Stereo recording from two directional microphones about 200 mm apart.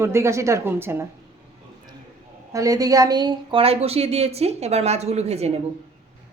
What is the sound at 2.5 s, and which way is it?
A woman's voice, 15° right (ahead or behind).